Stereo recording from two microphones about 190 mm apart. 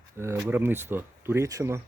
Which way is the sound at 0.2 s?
10° right (ahead or behind).